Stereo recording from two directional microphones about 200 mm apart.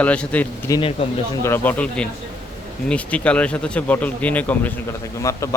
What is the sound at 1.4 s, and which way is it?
Speech, 10° left (ahead or behind).